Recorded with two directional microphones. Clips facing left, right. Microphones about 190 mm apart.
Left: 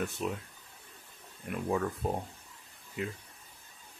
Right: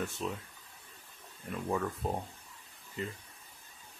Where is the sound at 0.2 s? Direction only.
10° left (ahead or behind).